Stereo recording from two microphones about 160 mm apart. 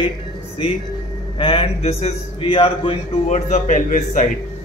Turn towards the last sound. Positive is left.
turn(degrees=55)  # may be behind; listen again after turning